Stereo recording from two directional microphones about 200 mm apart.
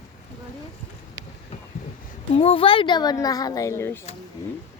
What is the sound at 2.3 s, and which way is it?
Speech, 30° left (ahead or behind).